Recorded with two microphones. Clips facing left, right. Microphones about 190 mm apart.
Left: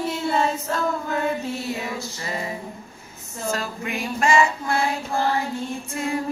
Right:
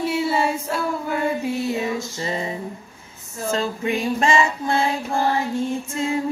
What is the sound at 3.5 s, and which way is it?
Music, 25° right (ahead or behind).